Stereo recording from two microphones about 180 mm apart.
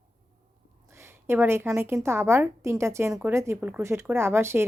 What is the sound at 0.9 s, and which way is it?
A woman's voice, 15° right (ahead or behind).